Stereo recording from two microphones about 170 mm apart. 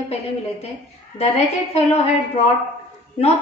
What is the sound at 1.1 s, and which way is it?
Speech, 40° left (ahead or behind).